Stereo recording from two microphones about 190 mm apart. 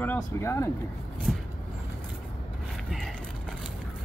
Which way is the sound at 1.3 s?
Centre (ahead or behind).